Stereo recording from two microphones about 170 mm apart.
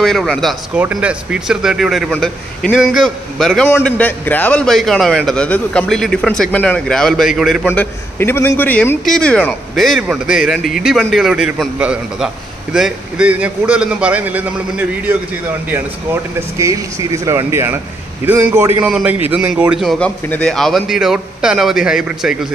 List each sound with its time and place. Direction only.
0.0 s a man's voice: centre (ahead or behind)
7.7 s a man's voice: 10° left (ahead or behind); by 15.1 s 10° right (ahead or behind)
16.3 s a man's voice: 20° right (ahead or behind)